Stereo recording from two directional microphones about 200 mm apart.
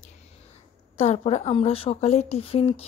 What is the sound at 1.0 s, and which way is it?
Speech, 35° left (ahead or behind).